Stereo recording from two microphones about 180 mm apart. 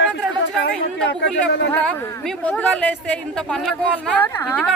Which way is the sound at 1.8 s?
5° left (ahead or behind).